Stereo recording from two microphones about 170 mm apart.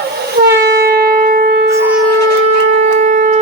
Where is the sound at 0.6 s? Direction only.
65° right (ahead or behind).